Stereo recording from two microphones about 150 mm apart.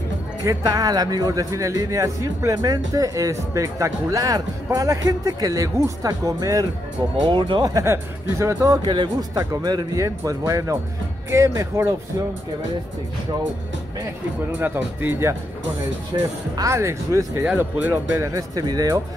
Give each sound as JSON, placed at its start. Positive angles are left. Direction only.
{"t": 0.4, "sound": "a man's voice", "side_deg": -25}
{"t": 14.6, "sound": "speech", "side_deg": -15}
{"t": 16.1, "sound": "speech", "side_deg": -30}
{"t": 16.5, "sound": "a man's voice", "side_deg": -20}